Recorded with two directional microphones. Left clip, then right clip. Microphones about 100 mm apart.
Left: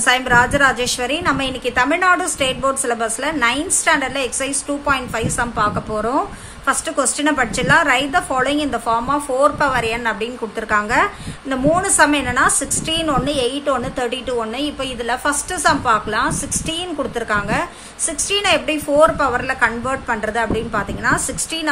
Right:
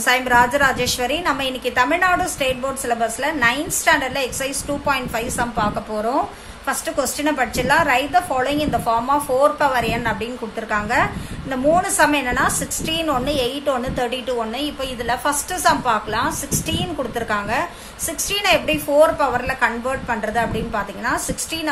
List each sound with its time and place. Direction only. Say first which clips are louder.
0.0 s a woman's voice: left 1 dB; 25° left (ahead or behind)